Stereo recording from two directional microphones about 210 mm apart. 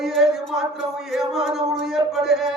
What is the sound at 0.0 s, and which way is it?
Music, centre (ahead or behind).